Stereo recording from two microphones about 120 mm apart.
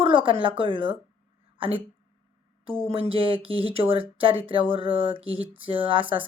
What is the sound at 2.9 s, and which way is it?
Speech, 50° right (ahead or behind).